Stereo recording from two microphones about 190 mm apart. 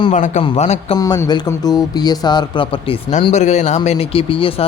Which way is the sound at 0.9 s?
20° left (ahead or behind).